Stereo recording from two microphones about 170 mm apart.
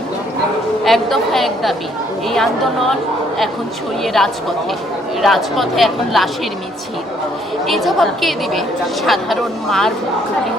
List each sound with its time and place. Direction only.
0.9 s a woman's voice: centre (ahead or behind)
4.0 s a woman's voice: centre (ahead or behind)
7.7 s a woman's voice: centre (ahead or behind)